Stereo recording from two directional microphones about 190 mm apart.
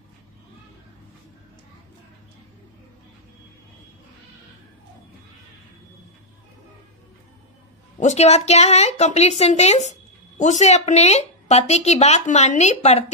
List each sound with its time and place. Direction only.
8.0 s speech: 35° left (ahead or behind)